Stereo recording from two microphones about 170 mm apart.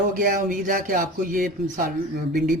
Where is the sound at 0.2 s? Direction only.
55° right (ahead or behind).